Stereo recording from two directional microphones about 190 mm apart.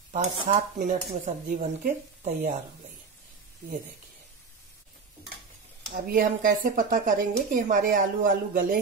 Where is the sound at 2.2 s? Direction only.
45° right (ahead or behind).